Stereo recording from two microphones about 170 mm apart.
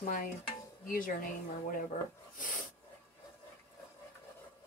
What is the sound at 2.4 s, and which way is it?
Snort, 50° left (ahead or behind).